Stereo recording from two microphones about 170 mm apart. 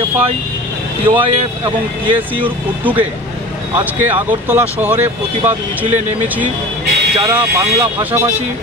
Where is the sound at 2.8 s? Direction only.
10° right (ahead or behind).